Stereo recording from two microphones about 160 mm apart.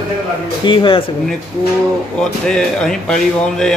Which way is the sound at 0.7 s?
30° left (ahead or behind).